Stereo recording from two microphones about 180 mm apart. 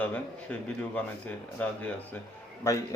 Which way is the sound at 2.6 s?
15° left (ahead or behind).